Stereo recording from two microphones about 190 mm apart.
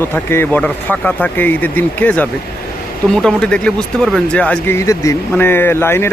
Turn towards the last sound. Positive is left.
turn(degrees=10)  # may be behind; listen again after turning